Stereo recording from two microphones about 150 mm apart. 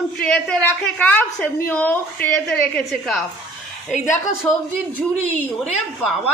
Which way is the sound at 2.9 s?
Centre (ahead or behind).